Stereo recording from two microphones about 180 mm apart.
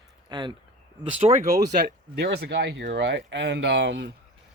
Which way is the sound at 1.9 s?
65° right (ahead or behind).